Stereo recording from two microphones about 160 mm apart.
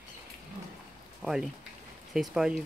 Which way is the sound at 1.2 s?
5° right (ahead or behind).